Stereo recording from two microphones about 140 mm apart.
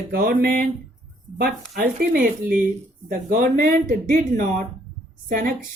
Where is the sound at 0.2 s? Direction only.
85° right.